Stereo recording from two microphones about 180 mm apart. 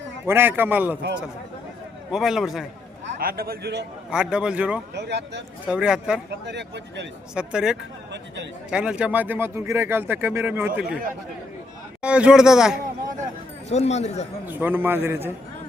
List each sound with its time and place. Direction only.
0.3 s speech: 10° right (ahead or behind)
2.1 s speech: centre (ahead or behind)
3.2 s a man's voice: 55° right (ahead or behind)
4.1 s speech: 5° right (ahead or behind)
4.9 s speech: 70° right (ahead or behind)
5.6 s speech: 5° right (ahead or behind)
6.4 s speech: 75° right (ahead or behind)
7.3 s speech: 5° right (ahead or behind)
12.0 s speech: 5° right (ahead or behind)
13.7 s speech: 35° left (ahead or behind)
14.4 s speech: 10° right (ahead or behind)